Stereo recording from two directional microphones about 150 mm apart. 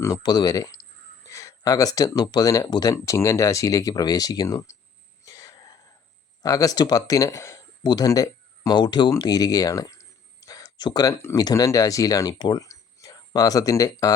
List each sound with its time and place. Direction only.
0.0 s speech: 25° left (ahead or behind)
5.2 s throat clearing: 25° left (ahead or behind)
6.4 s speech: 25° left (ahead or behind)